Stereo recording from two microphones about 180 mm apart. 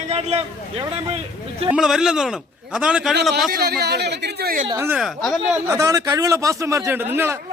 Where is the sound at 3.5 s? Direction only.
60° right (ahead or behind).